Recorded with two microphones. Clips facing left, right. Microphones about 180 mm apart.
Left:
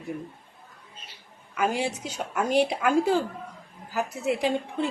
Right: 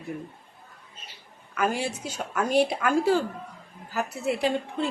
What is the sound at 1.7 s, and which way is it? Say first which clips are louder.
Speech: left 1 dB; 15° left (ahead or behind).